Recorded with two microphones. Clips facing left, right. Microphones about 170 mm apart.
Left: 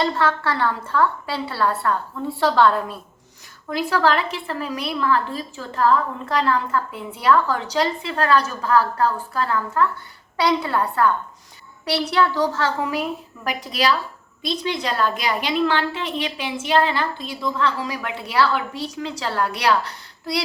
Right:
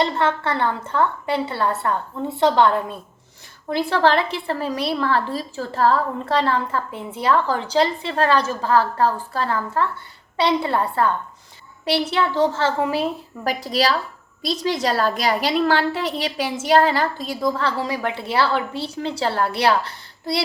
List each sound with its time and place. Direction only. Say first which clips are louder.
0.0 s a woman's voice: right 1 dB; 20° right (ahead or behind)